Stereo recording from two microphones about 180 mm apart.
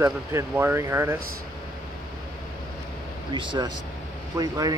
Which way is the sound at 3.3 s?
25° right (ahead or behind).